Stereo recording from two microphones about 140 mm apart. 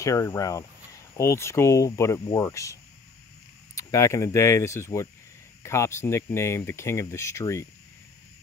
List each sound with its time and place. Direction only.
0.0 s speech: 20° left (ahead or behind)